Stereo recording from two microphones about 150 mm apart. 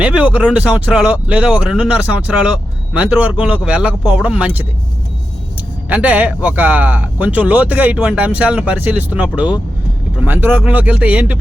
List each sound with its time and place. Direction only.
0.0 s speech: 10° right (ahead or behind)
5.9 s speech: 10° right (ahead or behind)